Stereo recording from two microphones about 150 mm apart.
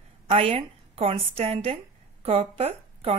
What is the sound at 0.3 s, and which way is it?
A woman's voice, 40° right (ahead or behind).